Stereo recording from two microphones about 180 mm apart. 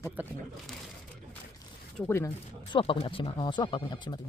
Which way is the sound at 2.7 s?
30° left (ahead or behind).